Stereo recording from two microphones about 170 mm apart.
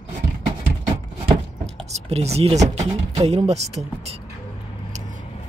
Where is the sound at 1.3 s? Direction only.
35° right (ahead or behind).